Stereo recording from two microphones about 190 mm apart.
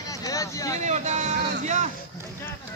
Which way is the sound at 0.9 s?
40° right (ahead or behind).